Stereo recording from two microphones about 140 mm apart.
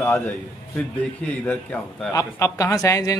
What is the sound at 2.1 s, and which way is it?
A man's voice, 20° left (ahead or behind).